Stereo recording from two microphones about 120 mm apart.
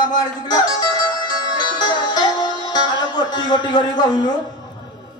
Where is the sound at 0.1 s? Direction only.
35° left (ahead or behind).